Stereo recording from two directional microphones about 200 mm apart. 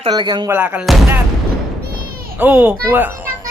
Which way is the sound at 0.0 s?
20° right (ahead or behind).